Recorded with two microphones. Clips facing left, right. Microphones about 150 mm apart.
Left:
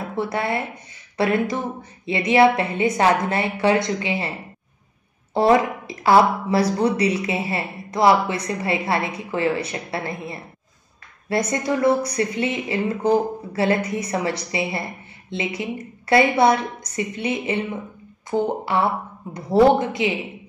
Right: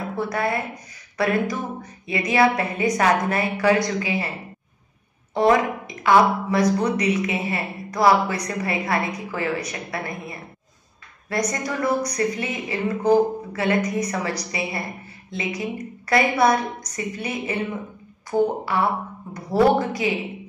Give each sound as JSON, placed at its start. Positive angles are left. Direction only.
{"t": 0.1, "sound": "a woman's voice", "side_deg": 25}
{"t": 5.3, "sound": "a woman's voice", "side_deg": 30}